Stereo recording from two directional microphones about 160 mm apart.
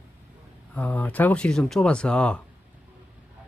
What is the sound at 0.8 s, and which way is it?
Speech, 10° left (ahead or behind).